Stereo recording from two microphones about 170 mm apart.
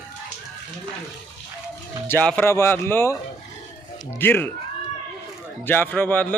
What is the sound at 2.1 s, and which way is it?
Speech, 10° left (ahead or behind).